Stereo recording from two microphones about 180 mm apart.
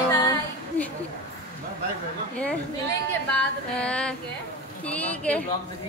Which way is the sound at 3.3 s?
5° left (ahead or behind).